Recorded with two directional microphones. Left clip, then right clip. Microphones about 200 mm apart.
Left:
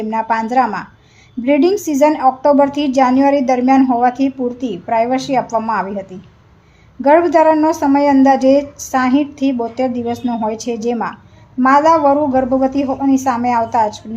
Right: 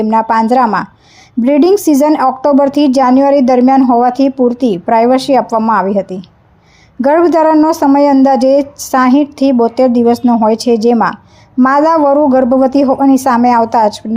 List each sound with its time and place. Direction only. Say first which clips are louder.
0.0 s a woman's voice: right 7 dB; 35° right (ahead or behind)